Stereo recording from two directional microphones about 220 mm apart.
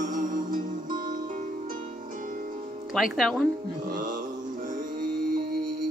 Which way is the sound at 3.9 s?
35° right (ahead or behind).